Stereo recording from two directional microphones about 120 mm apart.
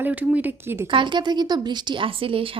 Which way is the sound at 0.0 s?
15° right (ahead or behind).